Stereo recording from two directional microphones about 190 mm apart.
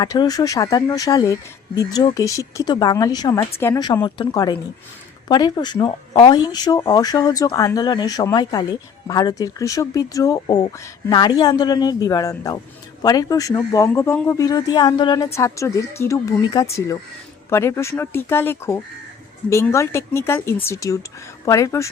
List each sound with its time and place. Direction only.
0.0 s speech: 20° left (ahead or behind)